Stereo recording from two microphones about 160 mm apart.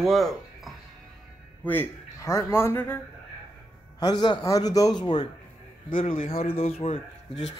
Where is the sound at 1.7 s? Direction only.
15° left (ahead or behind).